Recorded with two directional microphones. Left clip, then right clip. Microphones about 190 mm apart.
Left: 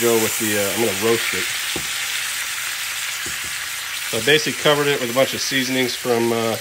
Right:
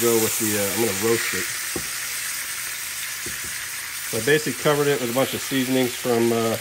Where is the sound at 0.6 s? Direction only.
Centre (ahead or behind).